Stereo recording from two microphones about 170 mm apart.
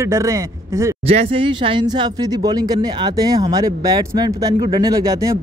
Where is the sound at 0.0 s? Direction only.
15° right (ahead or behind).